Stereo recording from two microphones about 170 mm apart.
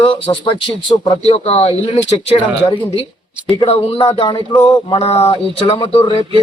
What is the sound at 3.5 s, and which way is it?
Speech, 35° left (ahead or behind).